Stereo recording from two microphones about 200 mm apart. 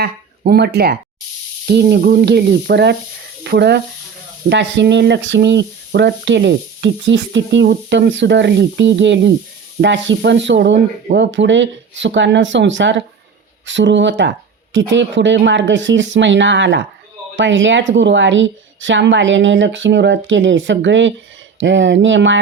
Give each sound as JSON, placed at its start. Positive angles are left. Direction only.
{"t": 0.0, "sound": "speech", "side_deg": -50}